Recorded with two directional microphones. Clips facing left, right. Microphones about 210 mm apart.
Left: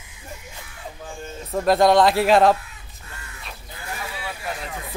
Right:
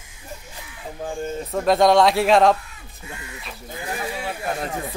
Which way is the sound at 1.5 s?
Centre (ahead or behind).